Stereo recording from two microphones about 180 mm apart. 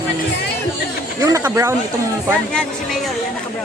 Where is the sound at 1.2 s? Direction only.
15° right (ahead or behind).